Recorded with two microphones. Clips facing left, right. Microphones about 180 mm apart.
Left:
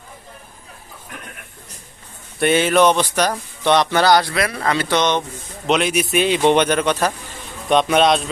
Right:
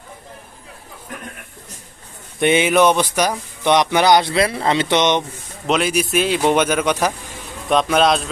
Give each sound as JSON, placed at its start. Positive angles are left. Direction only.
{"t": 2.4, "sound": "speech", "side_deg": -15}
{"t": 5.6, "sound": "speech", "side_deg": 0}
{"t": 7.7, "sound": "speech", "side_deg": 0}